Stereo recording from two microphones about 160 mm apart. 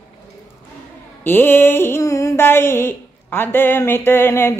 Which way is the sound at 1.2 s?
15° left (ahead or behind).